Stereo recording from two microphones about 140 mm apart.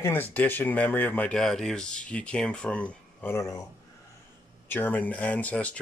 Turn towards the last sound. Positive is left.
turn(degrees=10)  # may be behind; listen again after turning